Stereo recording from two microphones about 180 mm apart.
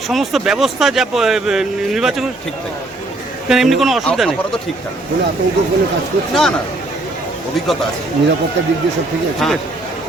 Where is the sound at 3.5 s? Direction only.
Centre (ahead or behind).